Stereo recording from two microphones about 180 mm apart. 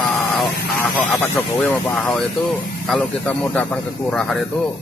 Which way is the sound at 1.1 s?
10° left (ahead or behind).